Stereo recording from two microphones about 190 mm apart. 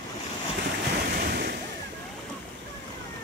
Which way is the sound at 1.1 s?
55° right (ahead or behind).